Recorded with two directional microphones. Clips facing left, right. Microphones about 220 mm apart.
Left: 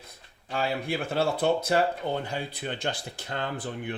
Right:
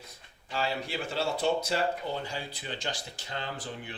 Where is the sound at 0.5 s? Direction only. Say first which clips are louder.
Left 4 dB; 55° left (ahead or behind).